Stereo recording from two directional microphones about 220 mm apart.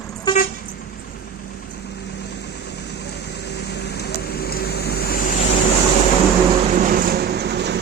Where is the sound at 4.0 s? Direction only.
45° left (ahead or behind).